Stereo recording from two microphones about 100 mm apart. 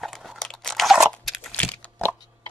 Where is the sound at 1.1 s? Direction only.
5° left (ahead or behind).